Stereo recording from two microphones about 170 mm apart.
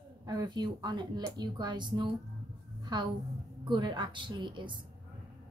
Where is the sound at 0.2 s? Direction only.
20° right (ahead or behind).